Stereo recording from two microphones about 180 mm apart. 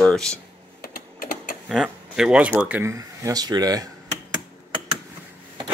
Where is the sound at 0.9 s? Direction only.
55° left (ahead or behind).